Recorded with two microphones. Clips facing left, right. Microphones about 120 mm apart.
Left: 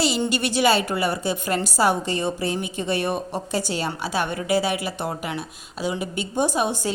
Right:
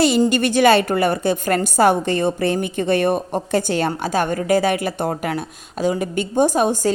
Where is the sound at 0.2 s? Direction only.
50° right (ahead or behind).